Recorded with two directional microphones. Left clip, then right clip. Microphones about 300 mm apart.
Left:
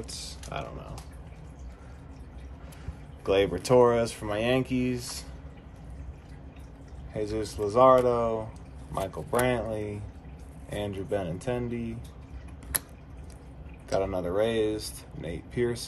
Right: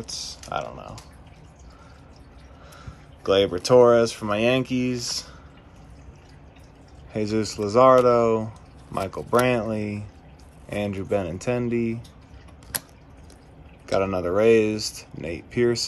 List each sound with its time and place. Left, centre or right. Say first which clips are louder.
0.0 s music: right 6 dB; centre
3.3 s speech: right 5 dB; centre
7.2 s speech: right 5 dB; right
13.9 s speech: right 5 dB; centre